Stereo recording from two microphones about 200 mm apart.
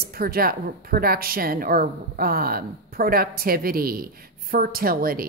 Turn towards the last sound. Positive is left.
turn(degrees=-45)  # may be behind; listen again after turning